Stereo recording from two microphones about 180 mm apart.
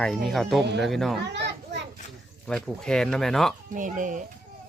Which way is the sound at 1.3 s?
75° right (ahead or behind).